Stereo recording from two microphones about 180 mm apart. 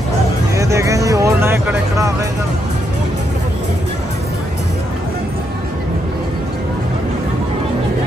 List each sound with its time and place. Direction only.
0.6 s music: 15° right (ahead or behind)